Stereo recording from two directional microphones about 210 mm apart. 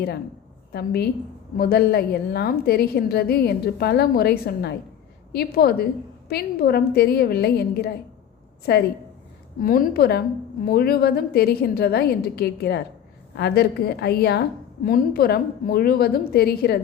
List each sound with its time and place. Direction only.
0.7 s a woman's voice: 50° left (ahead or behind)